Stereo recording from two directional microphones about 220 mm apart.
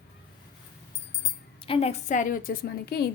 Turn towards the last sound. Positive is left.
turn(degrees=45)  # may be behind; listen again after turning